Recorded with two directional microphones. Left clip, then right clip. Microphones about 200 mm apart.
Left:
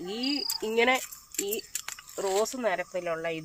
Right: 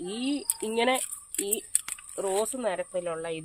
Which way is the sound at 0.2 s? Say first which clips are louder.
Left 3 dB; 35° right (ahead or behind).